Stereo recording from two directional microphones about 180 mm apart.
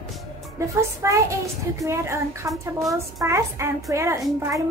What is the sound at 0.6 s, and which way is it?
A child's voice, 15° right (ahead or behind).